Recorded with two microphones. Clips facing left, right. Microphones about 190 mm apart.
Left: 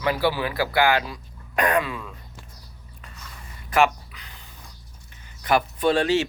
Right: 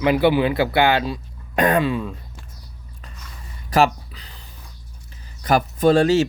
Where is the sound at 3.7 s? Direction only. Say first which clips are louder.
Right 3 dB; 35° right (ahead or behind).